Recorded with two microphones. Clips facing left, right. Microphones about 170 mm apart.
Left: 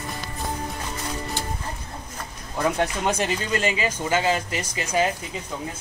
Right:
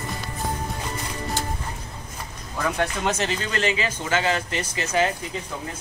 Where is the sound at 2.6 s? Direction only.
15° left (ahead or behind).